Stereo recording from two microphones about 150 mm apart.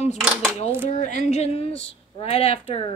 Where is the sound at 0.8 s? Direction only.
55° left (ahead or behind).